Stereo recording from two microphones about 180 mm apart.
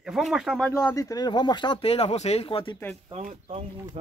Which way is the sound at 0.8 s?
15° left (ahead or behind).